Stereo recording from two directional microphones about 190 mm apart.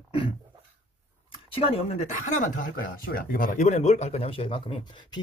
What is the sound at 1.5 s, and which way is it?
Speech, 30° left (ahead or behind).